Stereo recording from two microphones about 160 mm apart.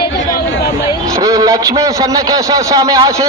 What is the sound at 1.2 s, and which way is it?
A man's voice, 20° right (ahead or behind).